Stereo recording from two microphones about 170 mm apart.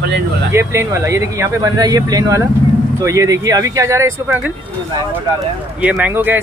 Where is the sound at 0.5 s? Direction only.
15° right (ahead or behind).